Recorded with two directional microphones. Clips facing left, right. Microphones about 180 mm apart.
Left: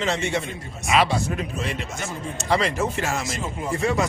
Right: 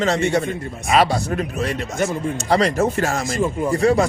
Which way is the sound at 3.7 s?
35° right (ahead or behind).